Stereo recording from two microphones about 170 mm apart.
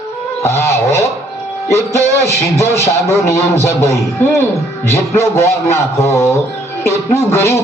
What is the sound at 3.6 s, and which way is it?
A man's voice, 15° left (ahead or behind).